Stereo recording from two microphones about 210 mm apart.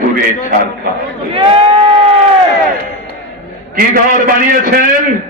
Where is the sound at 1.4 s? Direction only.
25° right (ahead or behind).